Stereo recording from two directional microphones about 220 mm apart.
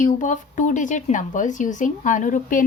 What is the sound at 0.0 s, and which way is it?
Speech, 35° left (ahead or behind).